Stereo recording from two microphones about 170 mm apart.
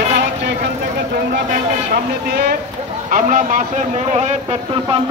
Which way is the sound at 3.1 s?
50° right (ahead or behind).